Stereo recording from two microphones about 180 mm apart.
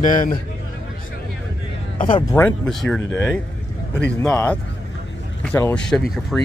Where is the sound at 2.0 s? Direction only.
30° left (ahead or behind).